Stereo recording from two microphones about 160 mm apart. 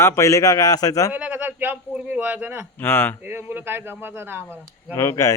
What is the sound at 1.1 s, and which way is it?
A man's voice, 10° right (ahead or behind).